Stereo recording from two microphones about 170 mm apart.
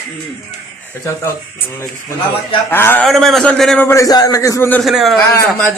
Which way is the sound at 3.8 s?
20° left (ahead or behind).